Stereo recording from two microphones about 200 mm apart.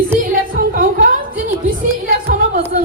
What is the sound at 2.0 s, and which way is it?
Music, 45° right (ahead or behind).